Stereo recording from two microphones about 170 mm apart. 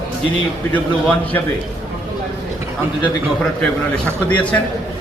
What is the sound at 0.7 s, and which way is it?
Speech, 10° left (ahead or behind).